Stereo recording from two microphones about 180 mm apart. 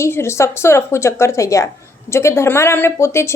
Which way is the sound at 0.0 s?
15° left (ahead or behind).